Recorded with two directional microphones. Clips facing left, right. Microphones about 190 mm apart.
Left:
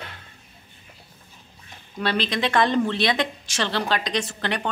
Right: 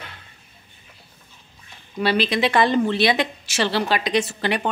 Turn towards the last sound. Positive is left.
turn(degrees=-10)  # may be behind; listen again after turning